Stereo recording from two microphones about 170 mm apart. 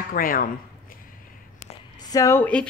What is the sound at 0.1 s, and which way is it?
Speech, 55° left (ahead or behind).